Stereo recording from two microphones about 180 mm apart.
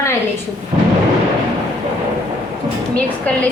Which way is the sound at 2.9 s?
5° left (ahead or behind).